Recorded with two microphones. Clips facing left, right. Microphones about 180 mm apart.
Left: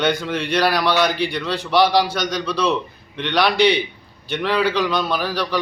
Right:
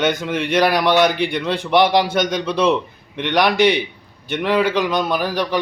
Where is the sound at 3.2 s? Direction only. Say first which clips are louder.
Right 2 dB; 15° right (ahead or behind).